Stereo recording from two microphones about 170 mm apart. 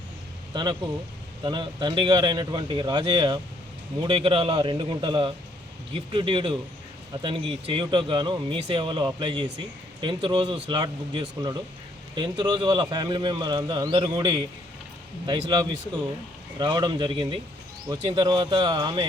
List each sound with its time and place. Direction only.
0.5 s speech: 25° right (ahead or behind)